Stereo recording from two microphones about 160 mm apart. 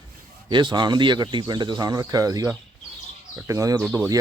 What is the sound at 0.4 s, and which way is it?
Speech, 30° right (ahead or behind).